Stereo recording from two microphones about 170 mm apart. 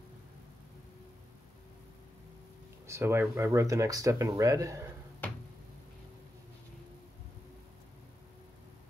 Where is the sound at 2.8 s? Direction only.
15° right (ahead or behind).